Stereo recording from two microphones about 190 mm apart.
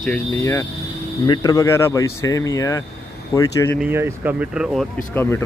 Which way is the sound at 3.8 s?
10° right (ahead or behind).